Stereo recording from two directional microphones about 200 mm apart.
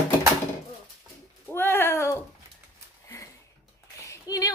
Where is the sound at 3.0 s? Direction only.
15° left (ahead or behind).